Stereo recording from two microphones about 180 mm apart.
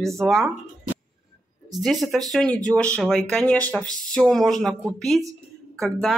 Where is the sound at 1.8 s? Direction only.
Centre (ahead or behind).